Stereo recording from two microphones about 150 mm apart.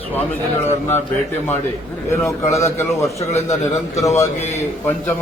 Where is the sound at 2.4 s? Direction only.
20° left (ahead or behind).